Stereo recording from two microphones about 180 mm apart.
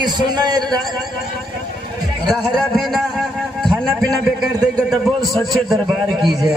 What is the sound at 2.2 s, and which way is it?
A man's voice, centre (ahead or behind).